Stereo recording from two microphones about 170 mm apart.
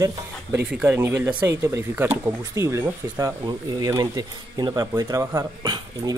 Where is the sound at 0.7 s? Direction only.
10° right (ahead or behind).